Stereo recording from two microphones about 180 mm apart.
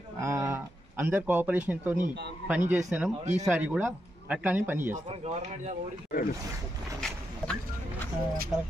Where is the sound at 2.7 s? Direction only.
5° right (ahead or behind).